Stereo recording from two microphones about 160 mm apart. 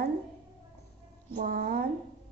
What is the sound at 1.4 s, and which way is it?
Speech, 70° right (ahead or behind).